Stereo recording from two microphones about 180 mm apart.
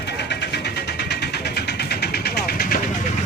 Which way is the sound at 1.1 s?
65° left (ahead or behind).